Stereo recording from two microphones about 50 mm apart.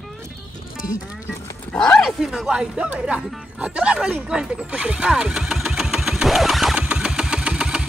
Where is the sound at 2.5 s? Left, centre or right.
Centre.